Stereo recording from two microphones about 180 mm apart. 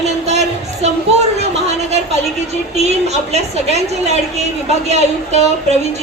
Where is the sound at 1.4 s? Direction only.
35° right (ahead or behind).